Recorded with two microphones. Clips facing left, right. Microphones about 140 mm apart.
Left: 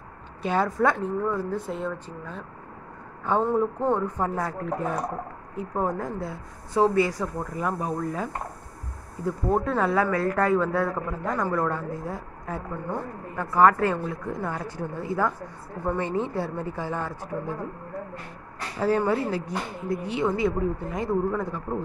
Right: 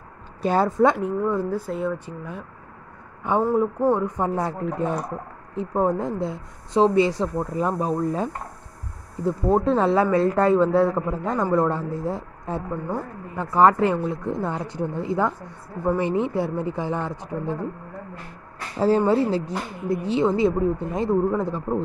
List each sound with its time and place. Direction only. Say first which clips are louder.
0.4 s a woman's voice: right 4 dB; 40° right (ahead or behind)
0.7 s a woman's voice: right 6 dB; 20° right (ahead or behind)
0.9 s a woman's voice: right 3 dB; 10° right (ahead or behind)
18.8 s a woman's voice: right 5 dB; 30° right (ahead or behind)